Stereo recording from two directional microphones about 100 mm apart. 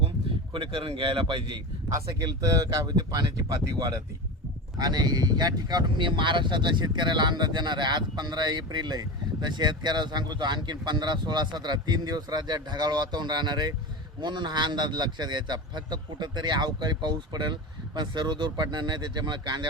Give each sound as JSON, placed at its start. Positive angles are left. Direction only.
{"t": 0.5, "sound": "speech", "side_deg": -55}
{"t": 1.9, "sound": "speech", "side_deg": -35}